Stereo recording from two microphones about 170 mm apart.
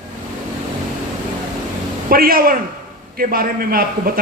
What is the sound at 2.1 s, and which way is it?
A man's voice, 60° right (ahead or behind).